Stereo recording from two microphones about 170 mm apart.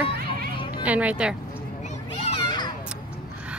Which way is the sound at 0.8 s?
10° right (ahead or behind).